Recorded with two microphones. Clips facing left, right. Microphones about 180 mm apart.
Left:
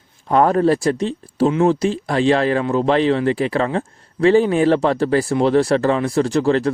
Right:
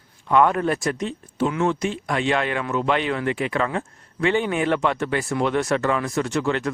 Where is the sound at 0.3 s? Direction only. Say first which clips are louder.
Left 4 dB; 35° left (ahead or behind).